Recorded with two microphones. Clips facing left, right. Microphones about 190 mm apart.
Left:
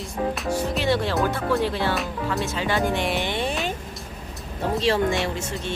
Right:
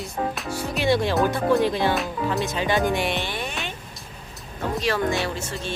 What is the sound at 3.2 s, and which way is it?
Speech, 25° left (ahead or behind).